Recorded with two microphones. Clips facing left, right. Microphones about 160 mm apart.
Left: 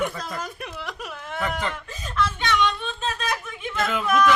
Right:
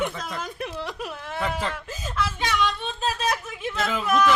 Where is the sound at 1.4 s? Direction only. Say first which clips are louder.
Even; centre (ahead or behind).